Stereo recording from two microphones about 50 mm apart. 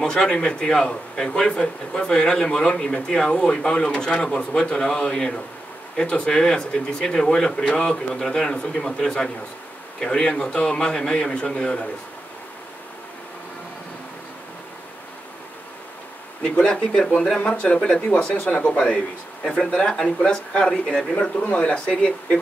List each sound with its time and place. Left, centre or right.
0.0 s a man's voice: centre
16.6 s a man's voice: centre
21.2 s speech: left